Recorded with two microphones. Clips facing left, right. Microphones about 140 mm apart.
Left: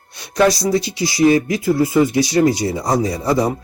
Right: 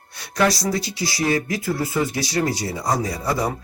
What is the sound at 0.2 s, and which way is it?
Speech, 20° left (ahead or behind).